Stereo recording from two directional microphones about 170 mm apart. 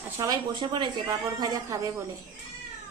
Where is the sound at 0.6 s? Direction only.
25° right (ahead or behind).